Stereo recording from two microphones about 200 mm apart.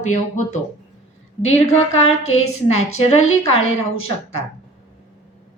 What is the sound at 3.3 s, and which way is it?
Speech, 80° left.